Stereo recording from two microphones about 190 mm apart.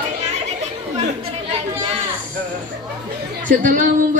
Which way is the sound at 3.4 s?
40° right (ahead or behind).